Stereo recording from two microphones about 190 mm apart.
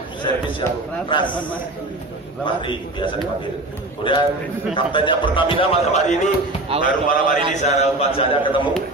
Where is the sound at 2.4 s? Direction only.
25° left (ahead or behind).